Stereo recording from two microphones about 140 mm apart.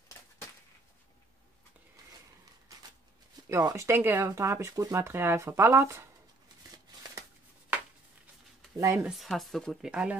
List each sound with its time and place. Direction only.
3.4 s speech: 20° right (ahead or behind)
8.7 s speech: 20° right (ahead or behind)
9.0 s speech: centre (ahead or behind)